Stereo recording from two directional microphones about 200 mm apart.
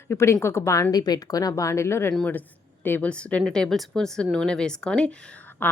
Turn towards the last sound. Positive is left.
turn(degrees=10)  # may be behind; listen again after turning